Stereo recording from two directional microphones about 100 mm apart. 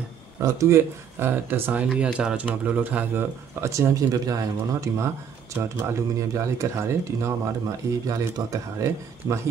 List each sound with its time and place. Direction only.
0.4 s speech: 30° right (ahead or behind)
3.6 s speech: 30° right (ahead or behind)